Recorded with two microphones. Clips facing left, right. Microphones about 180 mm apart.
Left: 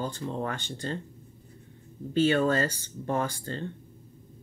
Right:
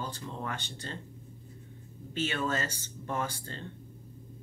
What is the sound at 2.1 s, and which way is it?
Speech, 35° left (ahead or behind).